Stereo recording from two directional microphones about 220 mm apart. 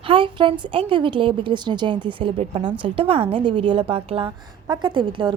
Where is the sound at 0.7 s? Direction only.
25° right (ahead or behind).